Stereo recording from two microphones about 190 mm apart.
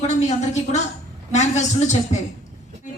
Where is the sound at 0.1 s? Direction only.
35° left (ahead or behind).